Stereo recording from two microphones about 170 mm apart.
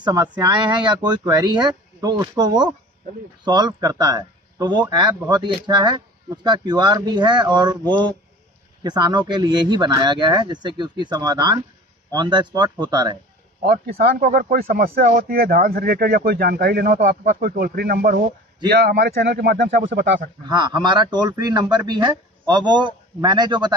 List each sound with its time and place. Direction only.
0.0 s speech: 25° right (ahead or behind)
13.6 s speech: 60° right (ahead or behind)
19.9 s speech: 90° right
20.4 s speech: 25° right (ahead or behind)